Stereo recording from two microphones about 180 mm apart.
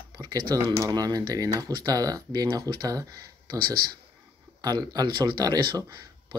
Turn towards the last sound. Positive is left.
turn(degrees=-25)  # may be behind; listen again after turning